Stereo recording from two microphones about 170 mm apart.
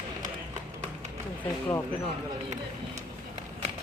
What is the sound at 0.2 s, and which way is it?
Run, 45° right (ahead or behind).